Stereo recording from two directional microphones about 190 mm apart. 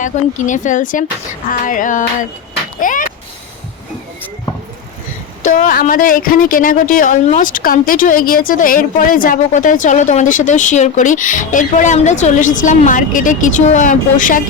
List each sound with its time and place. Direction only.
0.0 s speech: 40° left (ahead or behind)
5.4 s speech: 45° left (ahead or behind)